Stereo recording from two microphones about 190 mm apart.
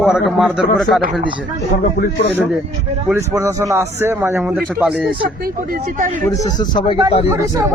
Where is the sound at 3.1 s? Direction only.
15° right (ahead or behind).